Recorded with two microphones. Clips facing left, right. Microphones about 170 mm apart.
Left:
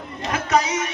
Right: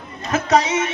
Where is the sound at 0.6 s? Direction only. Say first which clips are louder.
Right 4 dB; 25° right (ahead or behind).